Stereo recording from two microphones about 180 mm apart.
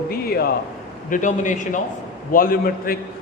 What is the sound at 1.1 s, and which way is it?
A man's voice, 45° left (ahead or behind).